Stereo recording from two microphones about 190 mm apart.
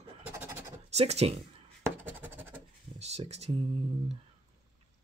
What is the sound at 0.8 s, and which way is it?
Speech, 35° right (ahead or behind).